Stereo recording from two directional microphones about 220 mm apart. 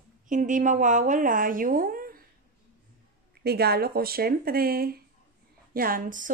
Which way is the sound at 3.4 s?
45° right (ahead or behind).